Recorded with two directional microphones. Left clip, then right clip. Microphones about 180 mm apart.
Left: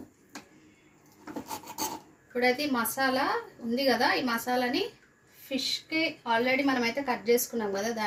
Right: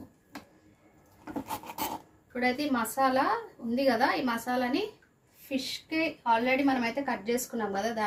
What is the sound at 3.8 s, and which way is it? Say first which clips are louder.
Speech: even; 5° right (ahead or behind).